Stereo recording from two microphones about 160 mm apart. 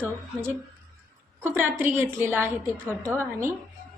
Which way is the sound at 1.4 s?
15° right (ahead or behind).